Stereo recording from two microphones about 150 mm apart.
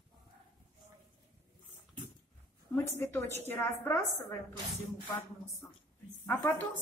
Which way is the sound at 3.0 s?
15° left (ahead or behind).